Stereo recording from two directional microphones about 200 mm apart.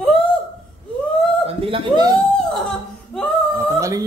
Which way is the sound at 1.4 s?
25° right (ahead or behind).